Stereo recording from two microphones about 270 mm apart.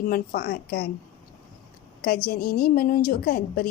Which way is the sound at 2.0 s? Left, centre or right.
Left.